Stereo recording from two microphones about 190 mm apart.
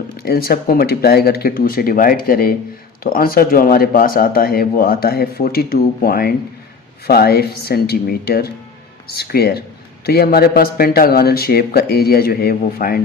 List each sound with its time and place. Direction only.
0.2 s a man's voice: 55° left (ahead or behind)